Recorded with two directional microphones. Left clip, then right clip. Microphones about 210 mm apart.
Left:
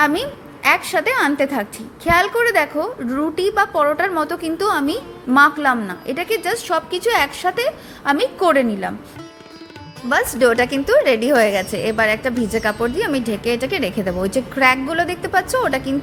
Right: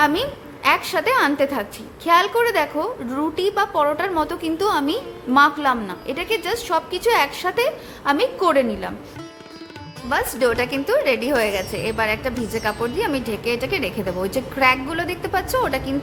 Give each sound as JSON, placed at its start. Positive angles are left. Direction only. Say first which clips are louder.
{"t": 0.0, "sound": "a woman's voice", "louder": "left 1 dB", "side_deg": 5}
{"t": 10.3, "sound": "a woman's voice", "louder": "left 6 dB", "side_deg": 15}